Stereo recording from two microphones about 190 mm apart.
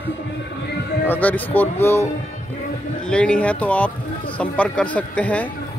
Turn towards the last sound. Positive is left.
turn(degrees=10)  # may be behind; listen again after turning